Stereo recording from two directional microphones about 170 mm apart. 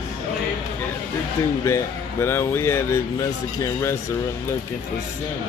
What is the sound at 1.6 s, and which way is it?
Speech, 15° left (ahead or behind).